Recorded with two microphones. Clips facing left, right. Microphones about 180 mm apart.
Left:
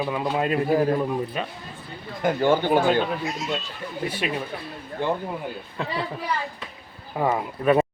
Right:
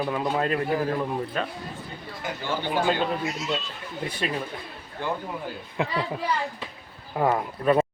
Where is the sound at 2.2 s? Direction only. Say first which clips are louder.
Left 10 dB; 55° left (ahead or behind).